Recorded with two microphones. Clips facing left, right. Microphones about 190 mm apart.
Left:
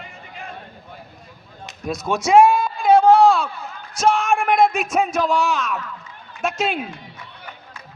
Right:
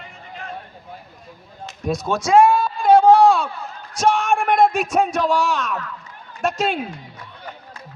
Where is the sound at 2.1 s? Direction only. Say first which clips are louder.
Left 1 dB; 20° left (ahead or behind).